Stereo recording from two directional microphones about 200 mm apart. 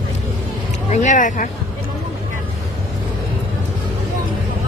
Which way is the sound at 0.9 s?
35° left (ahead or behind).